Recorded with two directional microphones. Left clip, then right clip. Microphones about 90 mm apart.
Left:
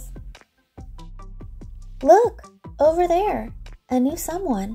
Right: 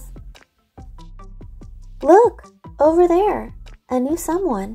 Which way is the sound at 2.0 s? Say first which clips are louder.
Right 2 dB; 30° right (ahead or behind).